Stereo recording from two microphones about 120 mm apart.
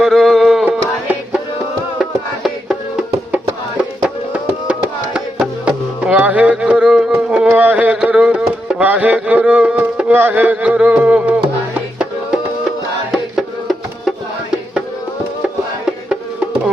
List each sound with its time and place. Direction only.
0.0 s music: centre (ahead or behind)
4.7 s music: 10° right (ahead or behind)
13.1 s music: centre (ahead or behind)